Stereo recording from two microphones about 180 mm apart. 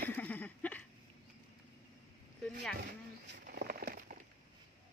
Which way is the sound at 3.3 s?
55° right (ahead or behind).